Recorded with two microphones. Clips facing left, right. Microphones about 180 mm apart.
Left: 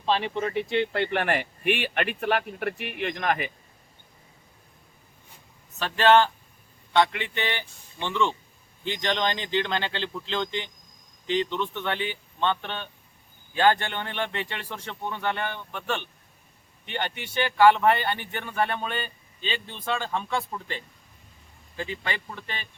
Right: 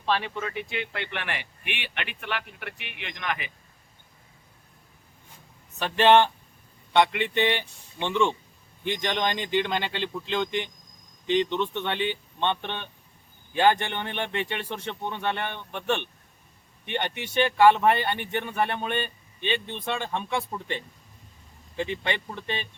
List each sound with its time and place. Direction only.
0.0 s speech: 20° left (ahead or behind); by 3.5 s 40° left (ahead or behind)
5.8 s speech: 15° right (ahead or behind)